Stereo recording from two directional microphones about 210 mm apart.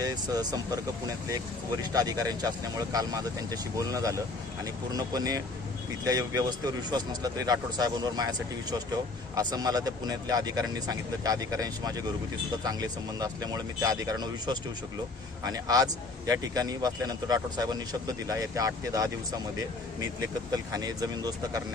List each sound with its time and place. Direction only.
0.0 s speech: 20° right (ahead or behind)